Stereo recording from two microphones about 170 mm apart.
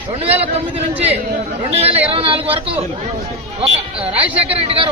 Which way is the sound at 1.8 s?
35° right (ahead or behind).